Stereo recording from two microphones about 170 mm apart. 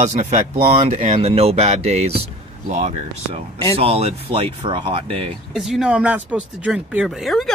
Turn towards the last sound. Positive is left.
turn(degrees=0)  # may be behind; listen again after turning